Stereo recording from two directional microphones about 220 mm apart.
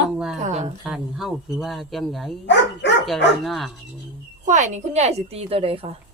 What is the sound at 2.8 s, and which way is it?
Dog, 50° left (ahead or behind).